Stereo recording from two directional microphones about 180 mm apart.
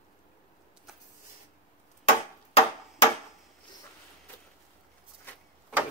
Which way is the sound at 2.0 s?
35° left (ahead or behind).